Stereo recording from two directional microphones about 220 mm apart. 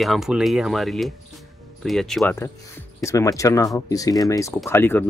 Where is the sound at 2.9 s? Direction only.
15° left (ahead or behind).